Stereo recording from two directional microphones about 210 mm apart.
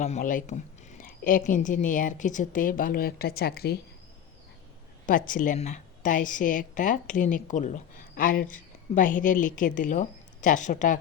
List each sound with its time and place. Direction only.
0.0 s a woman's voice: 35° left (ahead or behind)
5.0 s a woman's voice: 40° left (ahead or behind)